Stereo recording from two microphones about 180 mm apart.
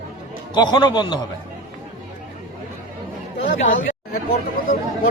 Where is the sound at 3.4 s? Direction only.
50° left (ahead or behind).